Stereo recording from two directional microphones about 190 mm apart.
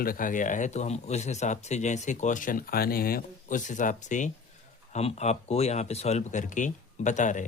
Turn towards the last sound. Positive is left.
turn(degrees=40)  # may be behind; listen again after turning